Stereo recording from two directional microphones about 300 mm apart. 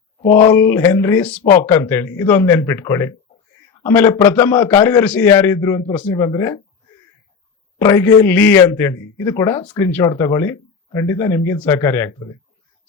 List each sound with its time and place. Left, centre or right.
0.2 s speech: left
0.4 s a man's voice: centre
7.8 s a man's voice: centre